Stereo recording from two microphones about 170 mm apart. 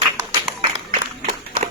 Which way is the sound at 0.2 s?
20° right (ahead or behind).